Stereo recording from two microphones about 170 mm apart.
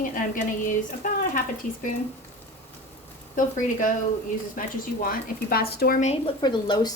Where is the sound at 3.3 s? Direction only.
50° left (ahead or behind).